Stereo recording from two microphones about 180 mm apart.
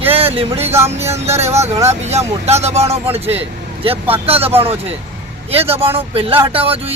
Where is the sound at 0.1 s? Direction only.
30° right (ahead or behind).